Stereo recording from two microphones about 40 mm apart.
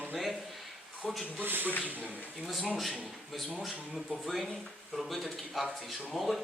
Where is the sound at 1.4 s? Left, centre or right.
Right.